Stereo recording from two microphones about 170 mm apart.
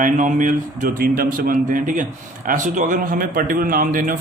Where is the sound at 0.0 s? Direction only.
50° right (ahead or behind).